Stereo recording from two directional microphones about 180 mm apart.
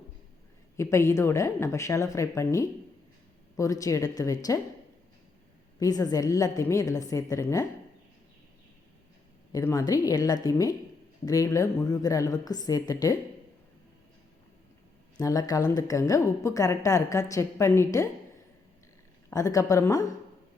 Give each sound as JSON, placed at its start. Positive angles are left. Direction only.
{"t": 0.8, "sound": "a woman's voice", "side_deg": 15}
{"t": 5.8, "sound": "a woman's voice", "side_deg": 20}
{"t": 9.5, "sound": "a woman's voice", "side_deg": 20}
{"t": 15.2, "sound": "a woman's voice", "side_deg": 20}
{"t": 19.3, "sound": "a woman's voice", "side_deg": 20}